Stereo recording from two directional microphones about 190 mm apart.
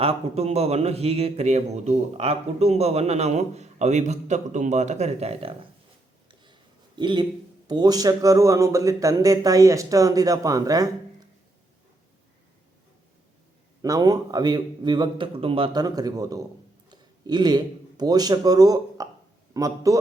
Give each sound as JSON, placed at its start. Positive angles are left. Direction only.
{"t": 0.0, "sound": "speech", "side_deg": -30}
{"t": 6.4, "sound": "a sound", "side_deg": -25}
{"t": 7.7, "sound": "speech", "side_deg": -20}
{"t": 13.8, "sound": "a man's voice", "side_deg": -20}